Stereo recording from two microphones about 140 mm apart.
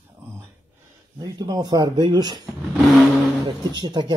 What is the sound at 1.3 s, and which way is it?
Speech, 30° right (ahead or behind).